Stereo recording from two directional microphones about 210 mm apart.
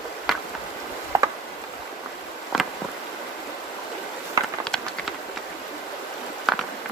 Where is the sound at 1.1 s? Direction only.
15° right (ahead or behind).